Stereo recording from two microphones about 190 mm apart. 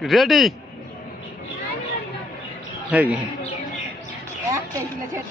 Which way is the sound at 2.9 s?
5° right (ahead or behind).